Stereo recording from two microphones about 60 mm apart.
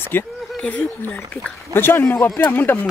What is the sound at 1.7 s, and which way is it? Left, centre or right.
Speech, left.